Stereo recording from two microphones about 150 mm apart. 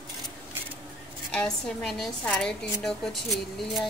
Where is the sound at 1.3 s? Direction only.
5° left (ahead or behind).